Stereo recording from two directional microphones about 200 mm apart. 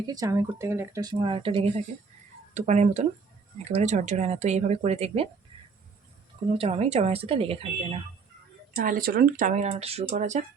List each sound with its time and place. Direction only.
0.0 s speech: 20° right (ahead or behind)
6.6 s speech: 30° right (ahead or behind)
8.7 s speech: 45° right (ahead or behind)